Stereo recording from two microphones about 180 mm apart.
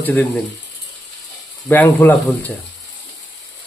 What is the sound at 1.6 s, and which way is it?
Speech, 10° left (ahead or behind).